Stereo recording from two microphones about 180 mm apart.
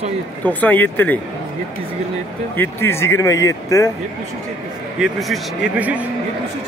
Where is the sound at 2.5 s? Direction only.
10° left (ahead or behind).